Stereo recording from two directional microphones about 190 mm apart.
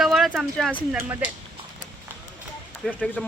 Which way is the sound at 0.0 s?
Centre (ahead or behind).